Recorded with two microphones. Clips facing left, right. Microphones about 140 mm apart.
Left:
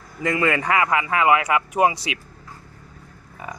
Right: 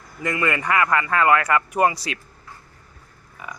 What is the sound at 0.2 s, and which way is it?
Speech, 25° left (ahead or behind).